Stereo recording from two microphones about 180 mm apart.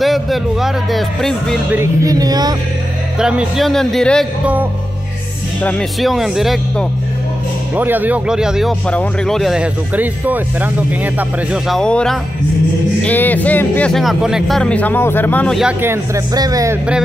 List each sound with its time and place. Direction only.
0.0 s speech: centre (ahead or behind)
1.7 s speech: 15° right (ahead or behind)
3.2 s speech: 5° right (ahead or behind)
5.6 s speech: 5° left (ahead or behind)
15.6 s speech: 15° right (ahead or behind)